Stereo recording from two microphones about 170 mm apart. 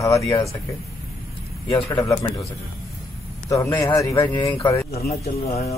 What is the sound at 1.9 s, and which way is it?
Speech, 20° left (ahead or behind).